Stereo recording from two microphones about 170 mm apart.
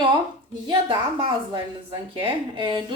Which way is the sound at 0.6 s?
30° right (ahead or behind).